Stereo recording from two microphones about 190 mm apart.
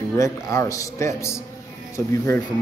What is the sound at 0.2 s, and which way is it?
Speech, 15° left (ahead or behind).